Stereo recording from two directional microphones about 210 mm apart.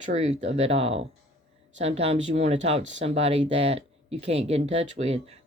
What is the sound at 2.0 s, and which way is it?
Speech, 30° right (ahead or behind).